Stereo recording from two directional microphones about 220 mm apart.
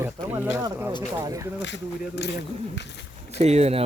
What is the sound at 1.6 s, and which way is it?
Speech, 50° left (ahead or behind).